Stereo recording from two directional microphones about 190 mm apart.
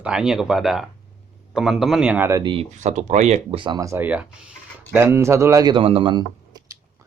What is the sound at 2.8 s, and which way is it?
Speech, 40° right (ahead or behind).